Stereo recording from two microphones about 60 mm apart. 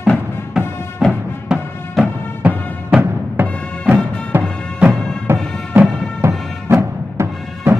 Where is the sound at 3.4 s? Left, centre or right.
Right.